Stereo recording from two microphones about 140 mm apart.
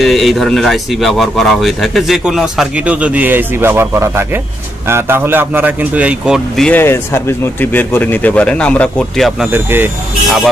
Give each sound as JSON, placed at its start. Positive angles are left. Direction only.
{"t": 0.0, "sound": "a man's voice", "side_deg": 0}
{"t": 6.7, "sound": "speech", "side_deg": 15}
{"t": 9.5, "sound": "a man's voice", "side_deg": -15}